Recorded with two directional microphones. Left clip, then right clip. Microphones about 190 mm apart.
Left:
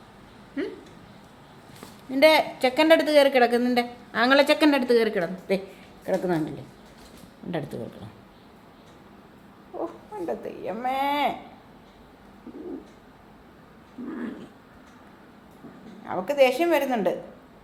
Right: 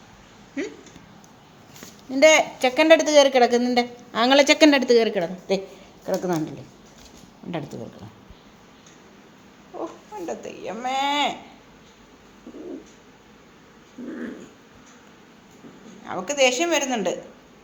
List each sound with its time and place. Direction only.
2.0 s speech: 10° right (ahead or behind)
10.2 s a woman's voice: 5° left (ahead or behind)
16.0 s a woman's voice: 5° left (ahead or behind)